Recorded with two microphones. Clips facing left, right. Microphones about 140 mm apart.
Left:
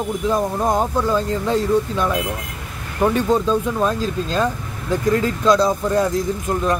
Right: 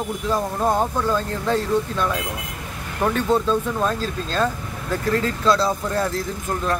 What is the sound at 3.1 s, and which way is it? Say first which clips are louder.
Speech: right 1 dB; 10° left (ahead or behind).